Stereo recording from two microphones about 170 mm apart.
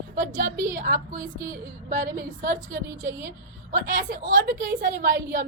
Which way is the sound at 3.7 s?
55° right (ahead or behind).